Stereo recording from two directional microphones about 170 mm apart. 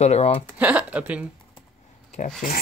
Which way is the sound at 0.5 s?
10° right (ahead or behind).